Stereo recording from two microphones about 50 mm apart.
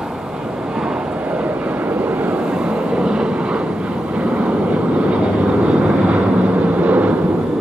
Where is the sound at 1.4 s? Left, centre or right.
Right.